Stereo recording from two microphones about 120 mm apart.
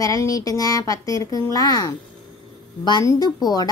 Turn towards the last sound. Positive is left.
turn(degrees=30)  # may be behind; listen again after turning